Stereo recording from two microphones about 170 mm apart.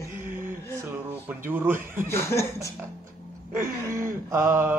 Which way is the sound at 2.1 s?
15° left (ahead or behind).